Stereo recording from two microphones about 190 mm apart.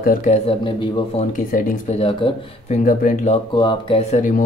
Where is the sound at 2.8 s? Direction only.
45° left (ahead or behind).